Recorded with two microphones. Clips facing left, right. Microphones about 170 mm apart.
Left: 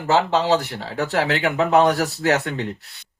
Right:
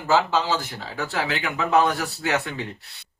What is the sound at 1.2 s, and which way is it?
Speech, 75° left (ahead or behind).